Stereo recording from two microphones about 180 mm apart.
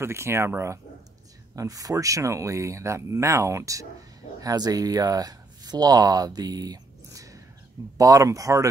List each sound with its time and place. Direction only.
0.0 s speech: 15° right (ahead or behind)